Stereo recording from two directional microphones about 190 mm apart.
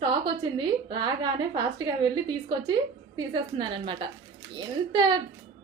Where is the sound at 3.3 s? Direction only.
25° right (ahead or behind).